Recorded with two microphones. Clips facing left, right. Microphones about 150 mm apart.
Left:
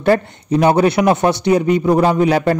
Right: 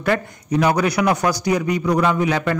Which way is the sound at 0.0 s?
30° left (ahead or behind).